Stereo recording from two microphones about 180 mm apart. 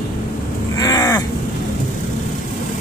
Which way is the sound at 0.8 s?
20° left (ahead or behind).